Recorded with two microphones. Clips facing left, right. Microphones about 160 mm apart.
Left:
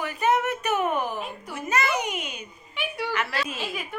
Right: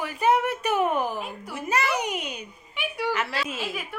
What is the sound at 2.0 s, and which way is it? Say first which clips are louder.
Speech: right 1 dB; 35° right (ahead or behind).